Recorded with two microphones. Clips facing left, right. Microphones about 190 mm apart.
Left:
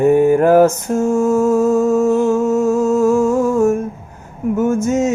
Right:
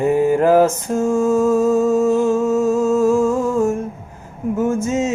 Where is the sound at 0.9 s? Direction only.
35° right (ahead or behind).